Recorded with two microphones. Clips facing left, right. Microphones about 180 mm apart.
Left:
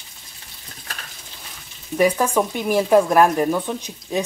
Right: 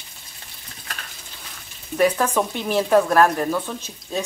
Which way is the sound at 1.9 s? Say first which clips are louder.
Left 1 dB; 10° left (ahead or behind).